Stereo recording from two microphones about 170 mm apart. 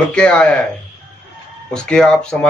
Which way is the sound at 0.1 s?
5° left (ahead or behind).